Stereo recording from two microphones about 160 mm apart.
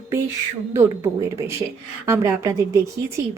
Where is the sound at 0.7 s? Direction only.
15° right (ahead or behind).